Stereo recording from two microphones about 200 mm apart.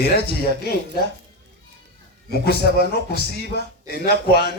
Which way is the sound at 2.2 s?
50° left (ahead or behind).